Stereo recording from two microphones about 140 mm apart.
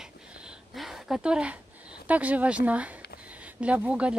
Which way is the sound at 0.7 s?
Centre (ahead or behind).